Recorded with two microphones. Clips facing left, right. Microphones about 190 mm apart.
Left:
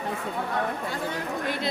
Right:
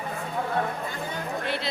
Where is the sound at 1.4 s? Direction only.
45° left (ahead or behind).